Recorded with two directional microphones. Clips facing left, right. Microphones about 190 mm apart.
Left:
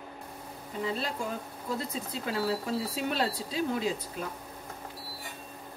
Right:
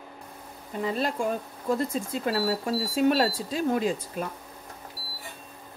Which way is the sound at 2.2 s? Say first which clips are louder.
Right 3 dB; 50° right (ahead or behind).